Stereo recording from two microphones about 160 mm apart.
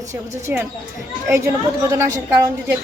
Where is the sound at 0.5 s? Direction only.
10° right (ahead or behind).